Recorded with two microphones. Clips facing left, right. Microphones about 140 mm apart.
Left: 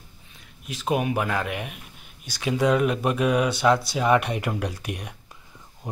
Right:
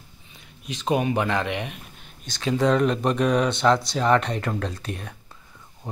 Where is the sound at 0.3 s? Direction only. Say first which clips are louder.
Right 2 dB; centre (ahead or behind).